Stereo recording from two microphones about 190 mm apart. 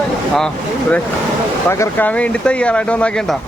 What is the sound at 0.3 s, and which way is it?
Speech, 5° left (ahead or behind).